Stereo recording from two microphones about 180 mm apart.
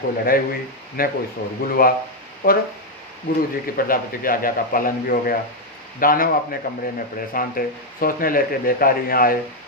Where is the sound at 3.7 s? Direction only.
50° left (ahead or behind).